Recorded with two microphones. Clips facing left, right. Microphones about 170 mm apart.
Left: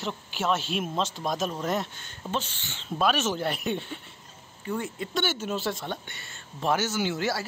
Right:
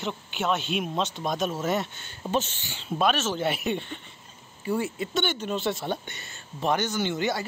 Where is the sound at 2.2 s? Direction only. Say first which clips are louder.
Right 4 dB; 20° right (ahead or behind).